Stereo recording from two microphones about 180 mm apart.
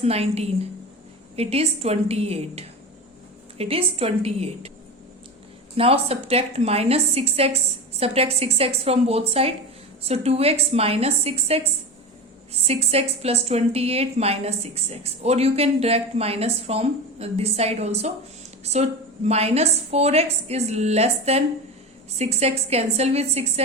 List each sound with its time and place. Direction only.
0.0 s a woman's voice: 35° right (ahead or behind)
5.7 s a woman's voice: 30° right (ahead or behind)
12.6 s a woman's voice: 35° right (ahead or behind)